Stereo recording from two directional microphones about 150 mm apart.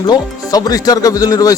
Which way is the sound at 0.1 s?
25° left (ahead or behind).